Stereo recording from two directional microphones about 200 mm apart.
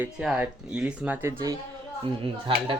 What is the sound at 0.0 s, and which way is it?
Speech, 5° right (ahead or behind).